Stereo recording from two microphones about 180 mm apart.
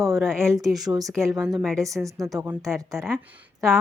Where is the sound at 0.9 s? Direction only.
20° right (ahead or behind).